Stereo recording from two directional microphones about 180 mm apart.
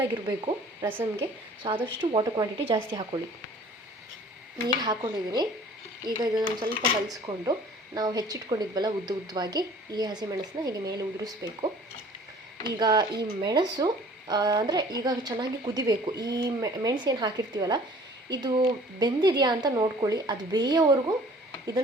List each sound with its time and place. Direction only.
0.0 s speech: 15° right (ahead or behind)
1.1 s speech: 25° right (ahead or behind)
4.8 s speech: 25° right (ahead or behind)
12.7 s speech: 20° right (ahead or behind)